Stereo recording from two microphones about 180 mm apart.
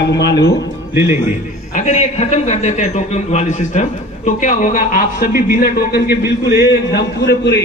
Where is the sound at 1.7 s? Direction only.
40° left (ahead or behind); by 7.6 s 70° left (ahead or behind).